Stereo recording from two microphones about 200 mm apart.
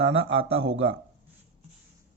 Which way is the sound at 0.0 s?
30° right (ahead or behind).